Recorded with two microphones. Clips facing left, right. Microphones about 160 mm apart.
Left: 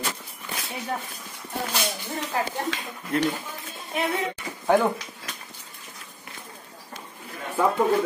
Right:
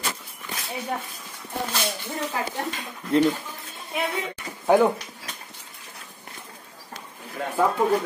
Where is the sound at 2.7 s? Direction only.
90° left.